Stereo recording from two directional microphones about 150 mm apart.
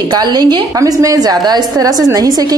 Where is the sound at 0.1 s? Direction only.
30° right (ahead or behind).